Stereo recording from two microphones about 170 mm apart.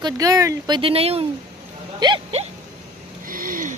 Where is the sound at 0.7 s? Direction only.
35° right (ahead or behind).